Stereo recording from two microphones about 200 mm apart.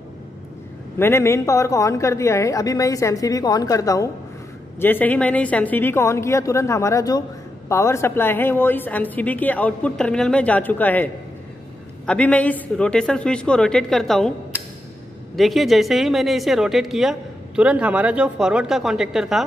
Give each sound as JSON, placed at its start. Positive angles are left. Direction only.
{"t": 0.9, "sound": "a woman's voice", "side_deg": 10}
{"t": 12.1, "sound": "a woman's voice", "side_deg": 5}